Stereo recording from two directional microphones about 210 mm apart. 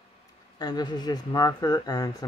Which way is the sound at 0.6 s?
20° left (ahead or behind).